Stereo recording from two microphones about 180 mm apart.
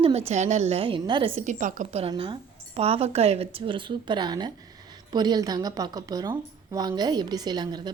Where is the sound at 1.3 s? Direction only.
45° right (ahead or behind).